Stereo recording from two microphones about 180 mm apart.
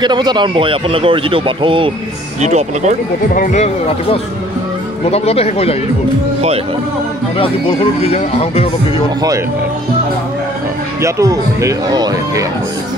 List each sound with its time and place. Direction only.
0.0 s speech: 25° right (ahead or behind)
2.4 s speech: 40° right (ahead or behind)
3.3 s speech: 40° left (ahead or behind)
7.3 s speech: 30° left (ahead or behind)
11.0 s speech: 15° right (ahead or behind)